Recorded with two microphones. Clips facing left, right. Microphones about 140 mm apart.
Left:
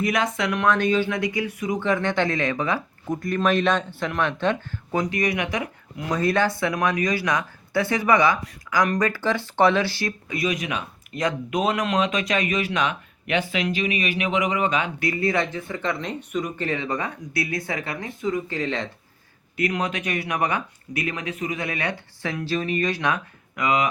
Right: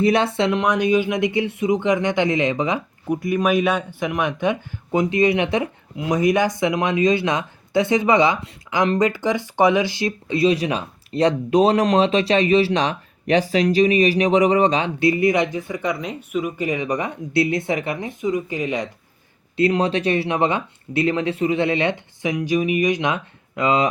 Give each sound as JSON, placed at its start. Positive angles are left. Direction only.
{"t": 0.0, "sound": "speech", "side_deg": -30}
{"t": 19.5, "sound": "speech", "side_deg": -30}